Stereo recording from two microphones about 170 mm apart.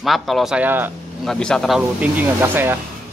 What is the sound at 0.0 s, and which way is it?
Speech, centre (ahead or behind).